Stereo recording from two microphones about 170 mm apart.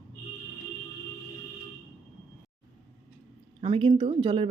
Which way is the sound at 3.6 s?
30° right (ahead or behind).